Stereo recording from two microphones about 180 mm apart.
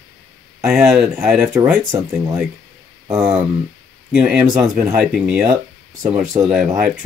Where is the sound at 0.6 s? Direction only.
5° right (ahead or behind).